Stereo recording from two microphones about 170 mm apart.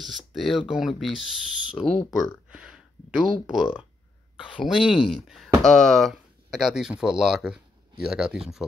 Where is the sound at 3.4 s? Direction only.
5° right (ahead or behind).